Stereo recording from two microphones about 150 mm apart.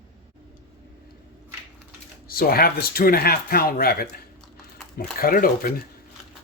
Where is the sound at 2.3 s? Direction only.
90° left; by 5.7 s 70° left (ahead or behind).